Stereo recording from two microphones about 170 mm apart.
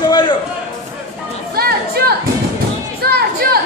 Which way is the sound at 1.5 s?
65° right (ahead or behind).